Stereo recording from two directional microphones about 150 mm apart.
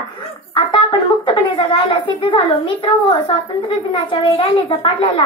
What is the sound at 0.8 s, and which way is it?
A child's voice, 30° left (ahead or behind).